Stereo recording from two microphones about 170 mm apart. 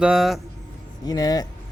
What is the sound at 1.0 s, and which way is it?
Speech, 20° left (ahead or behind).